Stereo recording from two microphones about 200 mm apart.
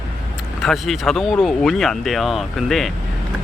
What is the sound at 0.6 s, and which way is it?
Speech, centre (ahead or behind).